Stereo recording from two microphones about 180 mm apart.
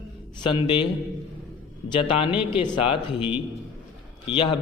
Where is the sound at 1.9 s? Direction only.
30° left (ahead or behind).